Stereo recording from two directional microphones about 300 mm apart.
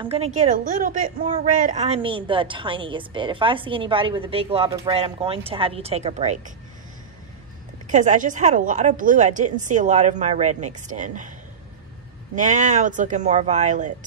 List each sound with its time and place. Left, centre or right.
0.0 s a woman's voice: centre
7.9 s a woman's voice: right
12.4 s a woman's voice: right